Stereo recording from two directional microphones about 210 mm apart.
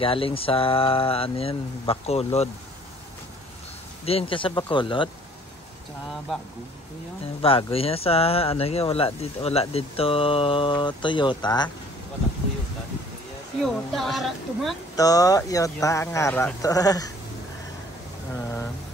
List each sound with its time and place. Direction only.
0.0 s speech: 25° left (ahead or behind)
4.0 s speech: 30° left (ahead or behind)
7.4 s speech: 25° left (ahead or behind)
13.6 s speech: centre (ahead or behind)
15.0 s speech: 15° left (ahead or behind)
18.3 s speech: 10° left (ahead or behind)